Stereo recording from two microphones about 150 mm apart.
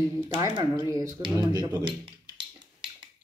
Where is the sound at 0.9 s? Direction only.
20° right (ahead or behind).